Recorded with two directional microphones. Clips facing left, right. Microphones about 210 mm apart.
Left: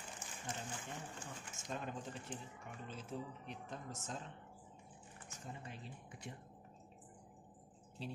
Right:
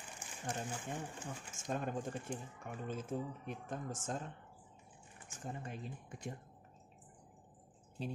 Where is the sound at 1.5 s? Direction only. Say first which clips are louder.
Right 6 dB; 50° right (ahead or behind).